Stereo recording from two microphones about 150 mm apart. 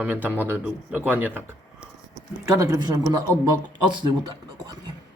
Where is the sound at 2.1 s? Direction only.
25° right (ahead or behind).